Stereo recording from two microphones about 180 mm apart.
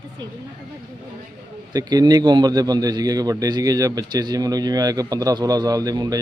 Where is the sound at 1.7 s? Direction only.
20° right (ahead or behind).